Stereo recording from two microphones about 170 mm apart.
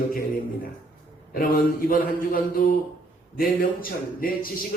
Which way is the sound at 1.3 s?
55° left (ahead or behind).